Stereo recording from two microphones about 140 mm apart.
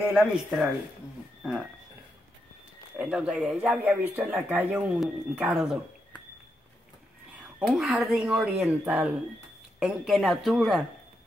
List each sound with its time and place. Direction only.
0.2 s speech: 5° right (ahead or behind)
3.0 s speech: 5° right (ahead or behind)
7.3 s speech: 5° right (ahead or behind)